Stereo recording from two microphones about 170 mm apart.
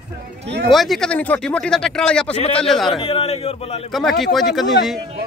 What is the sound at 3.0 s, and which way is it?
Speech, 35° left (ahead or behind).